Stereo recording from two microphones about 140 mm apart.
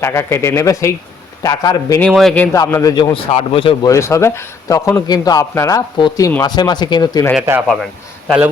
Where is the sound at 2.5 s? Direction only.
25° left (ahead or behind).